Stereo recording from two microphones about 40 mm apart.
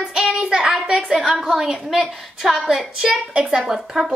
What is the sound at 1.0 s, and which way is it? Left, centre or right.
A woman's voice, centre.